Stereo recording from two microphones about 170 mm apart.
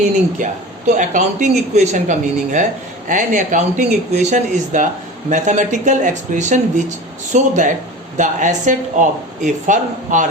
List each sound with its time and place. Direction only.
0.4 s speech: 50° right (ahead or behind)